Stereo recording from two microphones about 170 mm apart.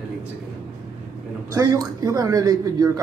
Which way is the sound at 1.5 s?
20° right (ahead or behind).